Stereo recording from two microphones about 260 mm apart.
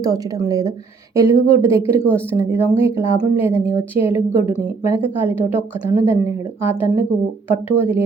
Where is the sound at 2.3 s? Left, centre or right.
Centre.